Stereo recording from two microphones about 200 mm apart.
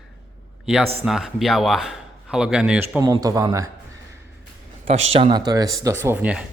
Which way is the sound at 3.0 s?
15° right (ahead or behind).